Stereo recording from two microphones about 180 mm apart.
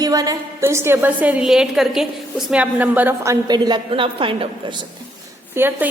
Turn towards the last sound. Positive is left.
turn(degrees=-10)  # may be behind; listen again after turning